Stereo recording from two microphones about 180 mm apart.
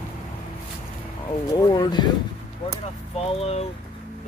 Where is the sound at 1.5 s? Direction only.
20° left (ahead or behind).